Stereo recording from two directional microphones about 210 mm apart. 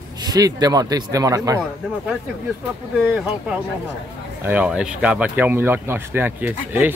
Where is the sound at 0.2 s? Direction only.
15° right (ahead or behind).